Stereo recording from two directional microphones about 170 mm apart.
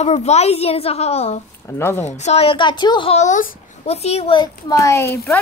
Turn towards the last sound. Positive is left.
turn(degrees=20)  # may be behind; listen again after turning